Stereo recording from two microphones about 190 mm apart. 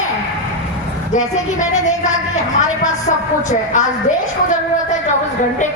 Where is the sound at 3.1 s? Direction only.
35° left (ahead or behind).